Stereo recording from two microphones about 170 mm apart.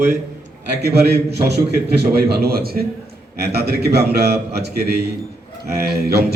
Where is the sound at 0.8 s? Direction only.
70° right (ahead or behind).